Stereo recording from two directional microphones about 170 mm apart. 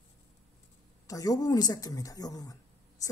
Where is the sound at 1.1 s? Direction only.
20° left (ahead or behind).